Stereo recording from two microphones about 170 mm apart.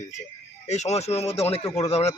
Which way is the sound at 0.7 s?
40° left (ahead or behind).